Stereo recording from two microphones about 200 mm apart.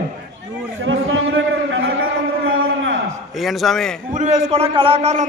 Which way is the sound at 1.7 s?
85° right.